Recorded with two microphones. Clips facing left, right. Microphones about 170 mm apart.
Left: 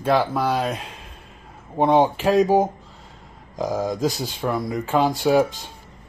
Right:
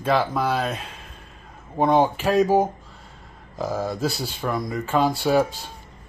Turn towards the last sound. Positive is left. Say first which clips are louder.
# left 2 dB
turn(degrees=15)  # may be behind; listen again after turning